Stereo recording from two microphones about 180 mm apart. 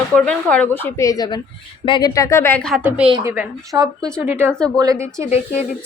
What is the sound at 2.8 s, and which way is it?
A woman's voice, 5° right (ahead or behind).